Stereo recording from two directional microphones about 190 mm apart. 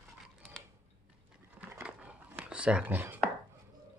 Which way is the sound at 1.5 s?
5° right (ahead or behind).